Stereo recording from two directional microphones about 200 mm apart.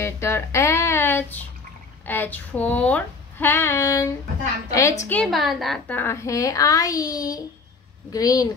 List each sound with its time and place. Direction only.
0.0 s a woman's voice: 15° left (ahead or behind)